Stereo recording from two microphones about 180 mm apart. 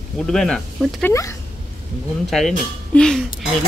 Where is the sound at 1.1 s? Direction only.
15° left (ahead or behind).